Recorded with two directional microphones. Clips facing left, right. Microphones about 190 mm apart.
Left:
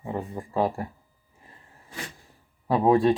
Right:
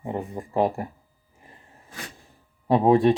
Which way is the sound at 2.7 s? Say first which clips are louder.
Right 2 dB; 20° right (ahead or behind).